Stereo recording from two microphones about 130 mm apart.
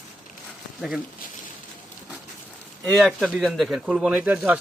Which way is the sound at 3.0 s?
5° right (ahead or behind).